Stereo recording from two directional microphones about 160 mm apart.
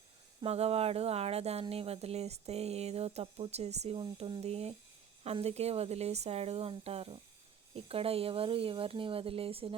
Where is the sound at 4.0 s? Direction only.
30° right (ahead or behind).